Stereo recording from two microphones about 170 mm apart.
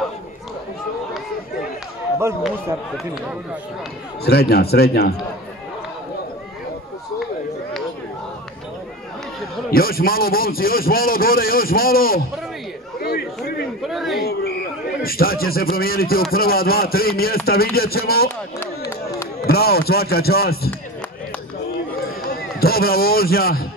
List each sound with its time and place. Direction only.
4.2 s a man's voice: 70° left (ahead or behind)
9.7 s a man's voice: 60° left (ahead or behind)
13.0 s a sound: 65° left (ahead or behind)
13.8 s speech: centre (ahead or behind)
15.0 s a man's voice: 60° left (ahead or behind)
18.6 s chop: 15° left (ahead or behind)
19.4 s a man's voice: 65° left (ahead or behind)
22.0 s run: 65° left (ahead or behind)
22.6 s a man's voice: 65° left (ahead or behind)